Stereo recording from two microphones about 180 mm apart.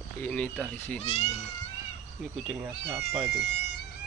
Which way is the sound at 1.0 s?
35° left (ahead or behind).